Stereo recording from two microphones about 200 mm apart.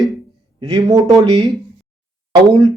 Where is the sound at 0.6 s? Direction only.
20° right (ahead or behind).